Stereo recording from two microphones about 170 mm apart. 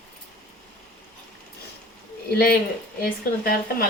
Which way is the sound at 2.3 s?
65° left (ahead or behind).